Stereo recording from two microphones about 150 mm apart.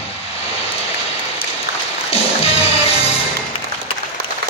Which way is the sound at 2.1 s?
40° left (ahead or behind).